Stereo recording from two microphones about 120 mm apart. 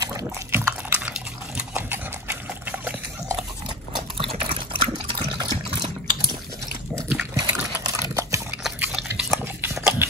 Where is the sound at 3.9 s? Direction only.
50° right (ahead or behind).